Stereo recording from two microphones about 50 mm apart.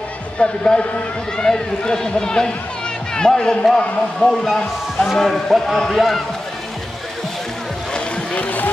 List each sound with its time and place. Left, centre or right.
0.4 s a man's voice: left; by 6.2 s centre
8.4 s speech: left